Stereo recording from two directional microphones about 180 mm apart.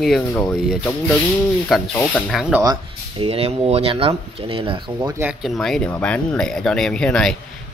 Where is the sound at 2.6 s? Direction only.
25° right (ahead or behind).